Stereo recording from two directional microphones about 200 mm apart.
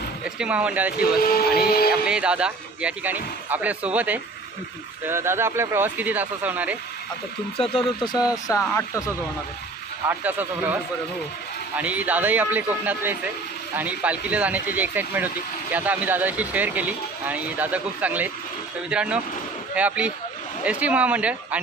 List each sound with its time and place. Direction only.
0.3 s speech: 5° right (ahead or behind)
1.2 s speech: 50° left (ahead or behind)
2.0 s speech: 5° right (ahead or behind)
7.5 s speech: 25° left (ahead or behind)
10.1 s speech: 10° right (ahead or behind)
11.8 s speech: 5° right (ahead or behind)